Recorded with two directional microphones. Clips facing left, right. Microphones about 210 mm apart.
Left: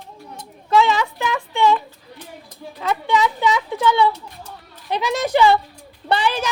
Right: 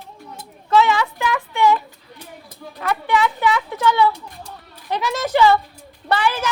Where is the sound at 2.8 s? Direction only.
20° left (ahead or behind).